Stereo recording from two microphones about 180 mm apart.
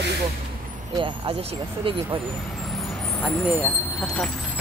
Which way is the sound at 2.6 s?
Centre (ahead or behind).